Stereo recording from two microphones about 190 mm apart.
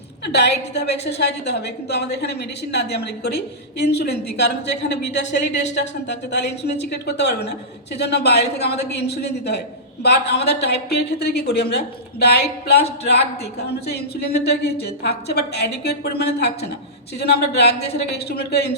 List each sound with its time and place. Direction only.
0.3 s a woman's voice: 60° left (ahead or behind)
13.1 s a woman's voice: 60° left (ahead or behind)